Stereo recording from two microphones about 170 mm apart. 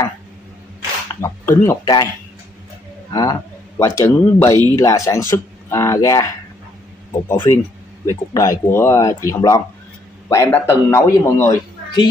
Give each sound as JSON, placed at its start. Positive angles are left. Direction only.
{"t": 1.2, "sound": "speech", "side_deg": 15}
{"t": 3.1, "sound": "speech", "side_deg": 20}
{"t": 7.2, "sound": "speech", "side_deg": 15}